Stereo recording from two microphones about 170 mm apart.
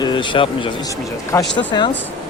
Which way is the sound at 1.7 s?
25° left (ahead or behind).